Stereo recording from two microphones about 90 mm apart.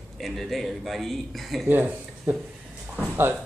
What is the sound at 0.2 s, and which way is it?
A man's voice, centre (ahead or behind).